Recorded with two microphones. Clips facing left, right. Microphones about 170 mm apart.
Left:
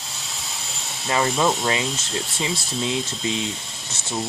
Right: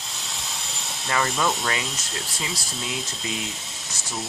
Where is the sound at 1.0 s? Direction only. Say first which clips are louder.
Left 3 dB; 25° left (ahead or behind).